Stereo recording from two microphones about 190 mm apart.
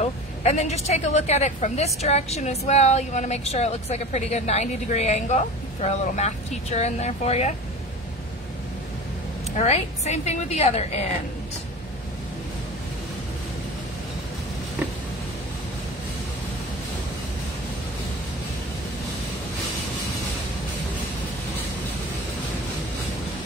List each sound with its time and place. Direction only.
0.0 s a woman's voice: 35° left (ahead or behind)
9.6 s a woman's voice: 35° left (ahead or behind)